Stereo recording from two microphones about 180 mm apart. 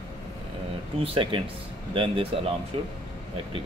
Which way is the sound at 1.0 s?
30° right (ahead or behind).